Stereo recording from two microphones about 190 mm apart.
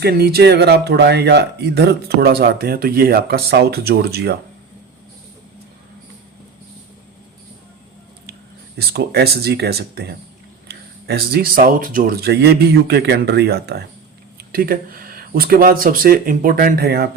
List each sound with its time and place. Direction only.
0.0 s speech: 55° right (ahead or behind)
8.8 s speech: 60° right (ahead or behind)